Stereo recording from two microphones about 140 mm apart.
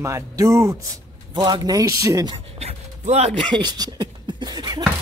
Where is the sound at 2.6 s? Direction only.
50° right (ahead or behind).